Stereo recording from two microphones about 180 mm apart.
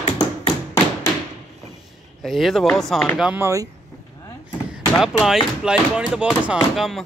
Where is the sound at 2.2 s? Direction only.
Centre (ahead or behind).